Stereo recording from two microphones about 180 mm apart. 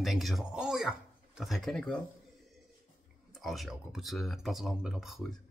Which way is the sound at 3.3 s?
Centre (ahead or behind).